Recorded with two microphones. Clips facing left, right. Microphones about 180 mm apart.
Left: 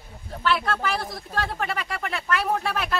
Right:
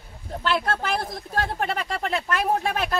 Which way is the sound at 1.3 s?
45° right (ahead or behind).